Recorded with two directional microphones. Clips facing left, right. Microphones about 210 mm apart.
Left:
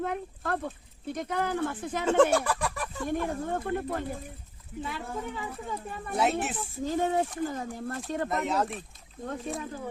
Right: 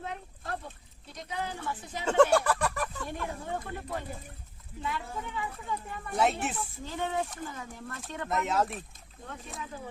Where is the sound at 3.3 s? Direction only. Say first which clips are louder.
Left 6 dB; 50° left (ahead or behind).